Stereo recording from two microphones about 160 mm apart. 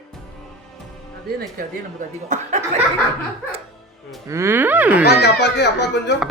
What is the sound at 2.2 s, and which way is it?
Speech, 50° right (ahead or behind).